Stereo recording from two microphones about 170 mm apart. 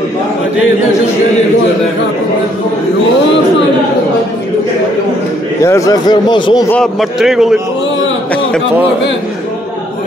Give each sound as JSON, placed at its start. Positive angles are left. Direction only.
{"t": 5.6, "sound": "speech", "side_deg": 20}
{"t": 6.7, "sound": "a man's voice", "side_deg": 0}